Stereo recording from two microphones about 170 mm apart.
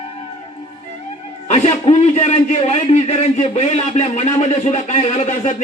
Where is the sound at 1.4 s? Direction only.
40° left (ahead or behind).